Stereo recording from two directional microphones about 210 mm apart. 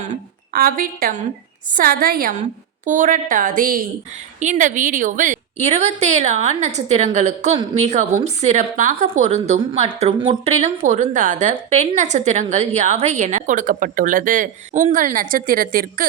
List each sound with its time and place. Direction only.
0.5 s a woman's voice: 45° right (ahead or behind)